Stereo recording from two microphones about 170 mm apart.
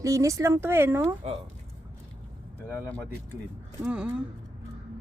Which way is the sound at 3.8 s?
5° right (ahead or behind).